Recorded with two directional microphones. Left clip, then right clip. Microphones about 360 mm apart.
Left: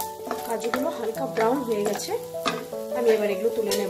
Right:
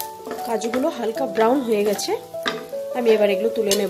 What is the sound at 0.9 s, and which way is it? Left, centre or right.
Speech, right.